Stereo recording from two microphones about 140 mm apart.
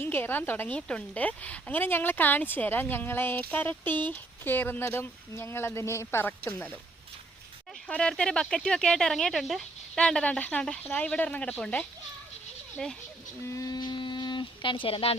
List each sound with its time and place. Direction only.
0.0 s speech: 15° left (ahead or behind)
7.9 s speech: 5° left (ahead or behind)
13.4 s speech: 20° left (ahead or behind); by 15.1 s 40° left (ahead or behind)